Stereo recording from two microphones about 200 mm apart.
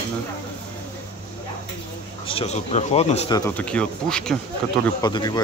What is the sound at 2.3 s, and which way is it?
Speech, 30° left (ahead or behind).